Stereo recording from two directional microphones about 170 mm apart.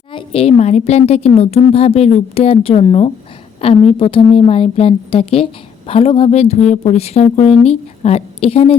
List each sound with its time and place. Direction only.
0.1 s a woman's voice: 30° left (ahead or behind)